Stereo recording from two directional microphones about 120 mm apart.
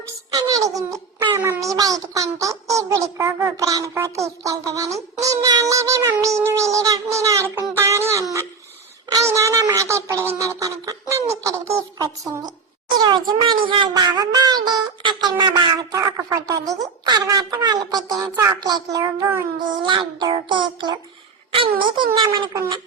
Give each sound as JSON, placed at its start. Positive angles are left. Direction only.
{"t": 0.3, "sound": "a child's voice", "side_deg": -30}
{"t": 19.7, "sound": "a child's voice", "side_deg": -40}